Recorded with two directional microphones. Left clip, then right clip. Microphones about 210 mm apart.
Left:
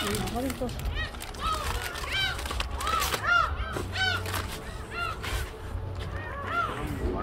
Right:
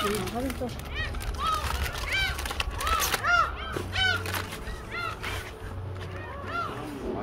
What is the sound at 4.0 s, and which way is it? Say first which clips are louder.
Chicken: right 2 dB; 50° right (ahead or behind).